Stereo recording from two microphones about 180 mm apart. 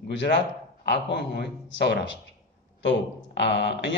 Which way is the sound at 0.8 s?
70° left (ahead or behind).